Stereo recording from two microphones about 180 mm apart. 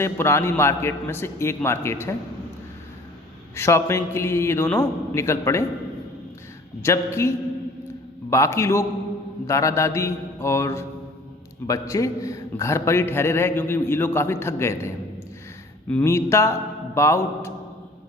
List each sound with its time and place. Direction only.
0.0 s a man's voice: 15° left (ahead or behind)
3.5 s a man's voice: 15° left (ahead or behind)
6.8 s a man's voice: 15° left (ahead or behind)
15.9 s a man's voice: 10° left (ahead or behind)